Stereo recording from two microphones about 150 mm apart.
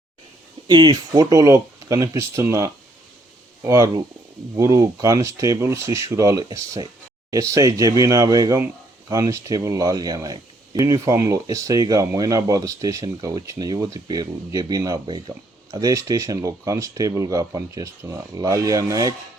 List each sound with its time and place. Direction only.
0.7 s speech: 25° right (ahead or behind)